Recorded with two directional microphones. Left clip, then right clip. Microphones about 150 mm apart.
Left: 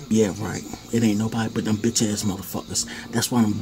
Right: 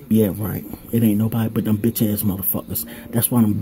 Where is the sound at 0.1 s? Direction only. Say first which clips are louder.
Right 2 dB; 30° right (ahead or behind).